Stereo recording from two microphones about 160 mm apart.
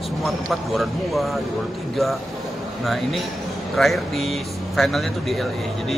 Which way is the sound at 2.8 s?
Centre (ahead or behind).